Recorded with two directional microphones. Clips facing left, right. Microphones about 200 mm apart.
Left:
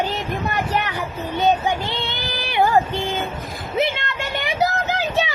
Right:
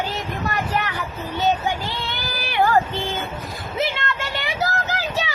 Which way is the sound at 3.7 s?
20° left (ahead or behind).